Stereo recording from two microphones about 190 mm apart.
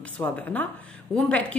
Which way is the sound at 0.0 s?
10° left (ahead or behind).